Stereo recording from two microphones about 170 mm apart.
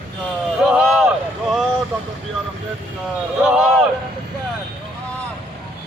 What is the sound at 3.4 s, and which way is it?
Speech, 5° right (ahead or behind).